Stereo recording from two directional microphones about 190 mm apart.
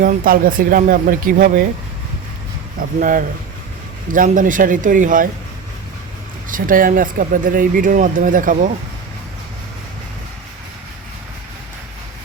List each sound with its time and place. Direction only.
0.0 s speech: 45° right (ahead or behind)
3.0 s speech: 45° right (ahead or behind)
6.5 s speech: 45° right (ahead or behind)